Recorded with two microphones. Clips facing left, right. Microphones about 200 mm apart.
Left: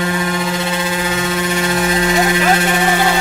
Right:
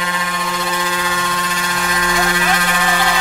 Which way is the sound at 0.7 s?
25° left (ahead or behind).